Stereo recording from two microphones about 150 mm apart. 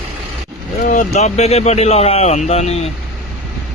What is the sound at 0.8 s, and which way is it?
Speech, 60° left (ahead or behind).